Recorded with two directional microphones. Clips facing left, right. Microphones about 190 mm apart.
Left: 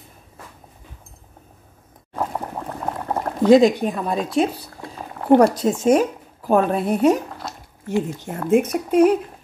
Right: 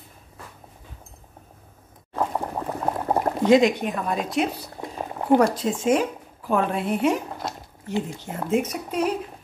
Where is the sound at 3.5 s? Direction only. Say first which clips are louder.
Left 5 dB; 35° left (ahead or behind).